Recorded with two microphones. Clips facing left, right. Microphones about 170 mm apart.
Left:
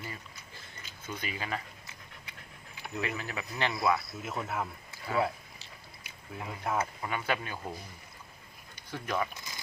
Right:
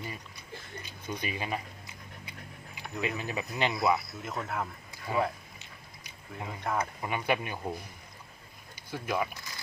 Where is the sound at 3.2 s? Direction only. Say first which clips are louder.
Right 3 dB; 20° right (ahead or behind).